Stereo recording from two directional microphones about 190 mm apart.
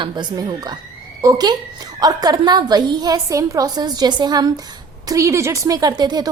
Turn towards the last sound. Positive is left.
turn(degrees=-20)  # may be behind; listen again after turning